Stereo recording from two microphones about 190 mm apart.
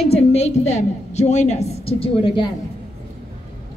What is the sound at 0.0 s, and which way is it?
A woman's voice, 35° left (ahead or behind).